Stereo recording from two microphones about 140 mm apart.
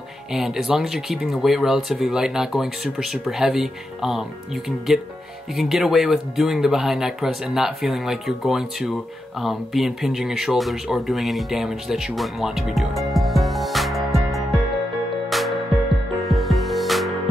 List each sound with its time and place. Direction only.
0.3 s speech: centre (ahead or behind)
15.2 s music: centre (ahead or behind)